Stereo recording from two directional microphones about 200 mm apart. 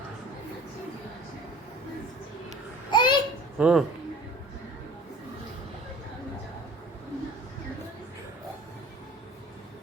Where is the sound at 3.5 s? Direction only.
5° right (ahead or behind).